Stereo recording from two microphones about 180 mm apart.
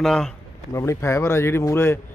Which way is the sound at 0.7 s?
15° left (ahead or behind).